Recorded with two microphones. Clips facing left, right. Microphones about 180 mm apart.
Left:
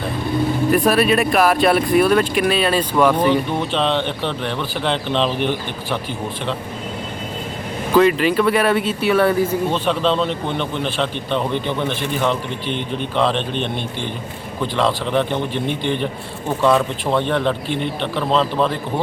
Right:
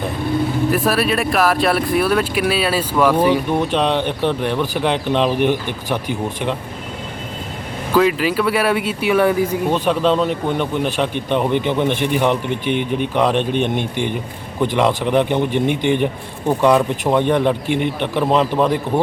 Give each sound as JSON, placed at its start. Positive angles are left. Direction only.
{"t": 0.7, "sound": "speech", "side_deg": 0}
{"t": 7.9, "sound": "speech", "side_deg": -5}